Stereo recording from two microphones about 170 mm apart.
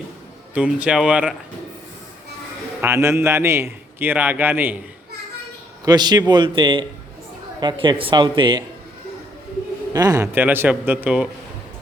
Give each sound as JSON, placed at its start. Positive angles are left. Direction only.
{"t": 0.5, "sound": "a man's voice", "side_deg": -10}
{"t": 2.8, "sound": "a man's voice", "side_deg": -15}
{"t": 5.8, "sound": "speech", "side_deg": -25}
{"t": 9.9, "sound": "a man's voice", "side_deg": -20}